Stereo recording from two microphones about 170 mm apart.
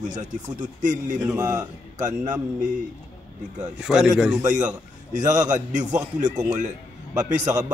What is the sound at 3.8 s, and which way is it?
Speech, 5° right (ahead or behind).